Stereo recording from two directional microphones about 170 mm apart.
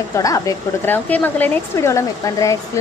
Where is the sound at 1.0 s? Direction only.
10° left (ahead or behind).